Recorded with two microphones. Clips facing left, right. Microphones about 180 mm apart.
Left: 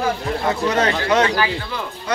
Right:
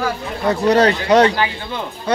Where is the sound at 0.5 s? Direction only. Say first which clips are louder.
Right 7 dB; 35° right (ahead or behind).